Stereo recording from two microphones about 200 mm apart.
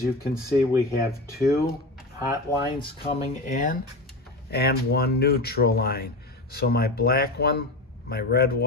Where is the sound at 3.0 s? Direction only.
25° left (ahead or behind).